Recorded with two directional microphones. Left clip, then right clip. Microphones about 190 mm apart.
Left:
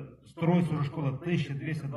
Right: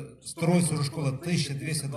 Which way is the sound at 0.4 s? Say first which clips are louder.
Right 2 dB; 50° right (ahead or behind).